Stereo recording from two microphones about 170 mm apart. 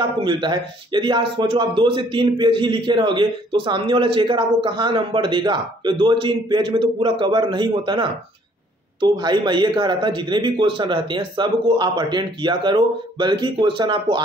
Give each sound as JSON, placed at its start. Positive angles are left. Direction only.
{"t": 0.0, "sound": "speech", "side_deg": -25}